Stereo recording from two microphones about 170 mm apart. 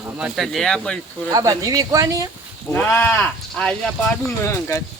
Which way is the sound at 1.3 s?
20° right (ahead or behind).